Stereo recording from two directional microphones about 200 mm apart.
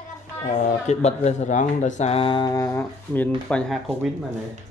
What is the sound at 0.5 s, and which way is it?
A child's voice, 35° left (ahead or behind).